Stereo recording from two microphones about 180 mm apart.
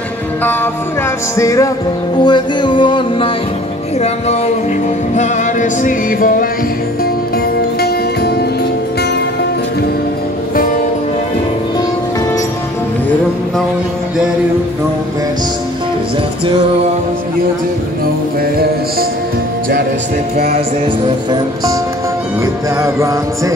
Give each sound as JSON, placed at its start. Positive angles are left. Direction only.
{"t": 1.3, "sound": "music", "side_deg": 15}
{"t": 5.1, "sound": "music", "side_deg": 40}
{"t": 7.8, "sound": "music", "side_deg": 60}
{"t": 22.8, "sound": "music", "side_deg": -15}